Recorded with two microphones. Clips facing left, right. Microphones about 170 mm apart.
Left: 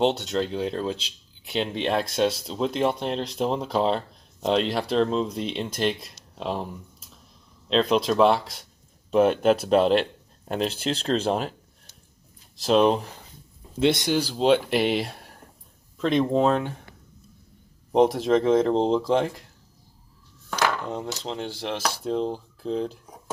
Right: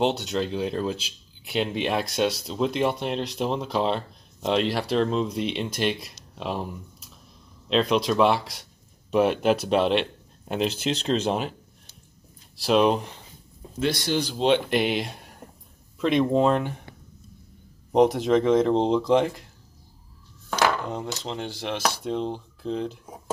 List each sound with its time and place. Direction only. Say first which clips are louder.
0.6 s speech: even; 5° right (ahead or behind)
7.7 s speech: left 1 dB; centre (ahead or behind)
12.6 s speech: left 1 dB; 5° right (ahead or behind)
13.7 s speech: left 4 dB; 20° left (ahead or behind)
14.1 s speech: left 1 dB; 5° left (ahead or behind)
17.9 s speech: even; centre (ahead or behind)
20.9 s speech: even; centre (ahead or behind)